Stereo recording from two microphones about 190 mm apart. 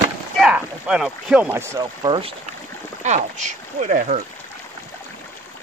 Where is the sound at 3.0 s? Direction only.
40° right (ahead or behind).